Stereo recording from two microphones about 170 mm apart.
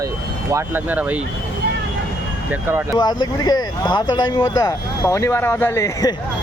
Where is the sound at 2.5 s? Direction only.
15° right (ahead or behind).